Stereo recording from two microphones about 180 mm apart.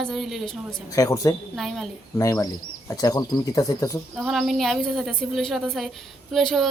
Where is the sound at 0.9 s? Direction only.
20° left (ahead or behind).